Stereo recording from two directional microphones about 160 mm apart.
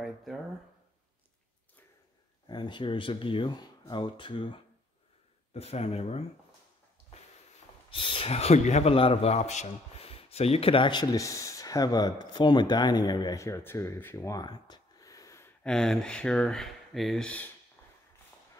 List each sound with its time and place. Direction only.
0.0 s a sound: centre (ahead or behind)
2.4 s speech: 30° left (ahead or behind)
7.9 s a man's voice: 35° left (ahead or behind)
15.6 s speech: 5° left (ahead or behind)